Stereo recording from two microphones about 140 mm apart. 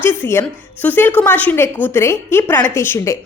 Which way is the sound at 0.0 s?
15° left (ahead or behind).